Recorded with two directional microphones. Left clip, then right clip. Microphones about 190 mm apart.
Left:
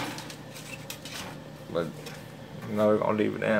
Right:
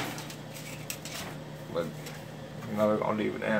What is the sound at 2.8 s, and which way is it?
Speech, 35° left (ahead or behind).